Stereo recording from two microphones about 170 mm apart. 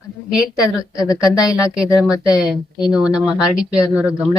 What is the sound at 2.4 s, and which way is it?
Speech, 5° right (ahead or behind).